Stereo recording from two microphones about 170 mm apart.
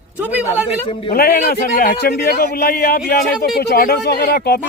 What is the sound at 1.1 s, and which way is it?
A man's voice, 65° left (ahead or behind).